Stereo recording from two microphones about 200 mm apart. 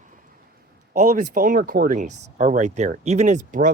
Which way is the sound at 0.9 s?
40° right (ahead or behind).